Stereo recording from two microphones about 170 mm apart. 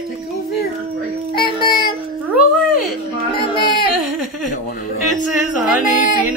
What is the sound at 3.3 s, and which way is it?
Female singing, 30° left (ahead or behind).